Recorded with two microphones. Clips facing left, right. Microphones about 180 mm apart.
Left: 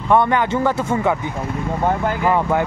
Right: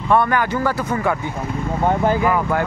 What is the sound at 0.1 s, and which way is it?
Speech, 20° left (ahead or behind).